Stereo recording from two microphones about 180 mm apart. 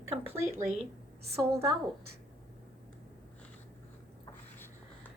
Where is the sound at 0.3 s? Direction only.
15° right (ahead or behind).